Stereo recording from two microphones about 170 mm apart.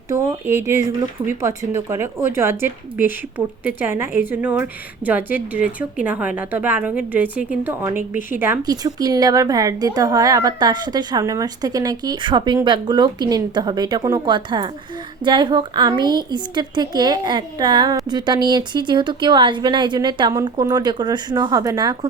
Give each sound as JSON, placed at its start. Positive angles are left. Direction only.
{"t": 0.1, "sound": "a woman's voice", "side_deg": -15}
{"t": 8.6, "sound": "a woman's voice", "side_deg": -20}